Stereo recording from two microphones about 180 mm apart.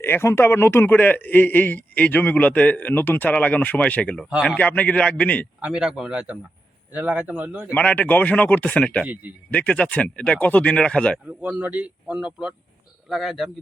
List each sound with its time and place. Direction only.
0.0 s a man's voice: 15° left (ahead or behind)
5.5 s a man's voice: 5° right (ahead or behind)
7.7 s a man's voice: 10° left (ahead or behind)
9.0 s a man's voice: 10° right (ahead or behind)
9.5 s a man's voice: 5° left (ahead or behind)
11.3 s speech: 5° right (ahead or behind)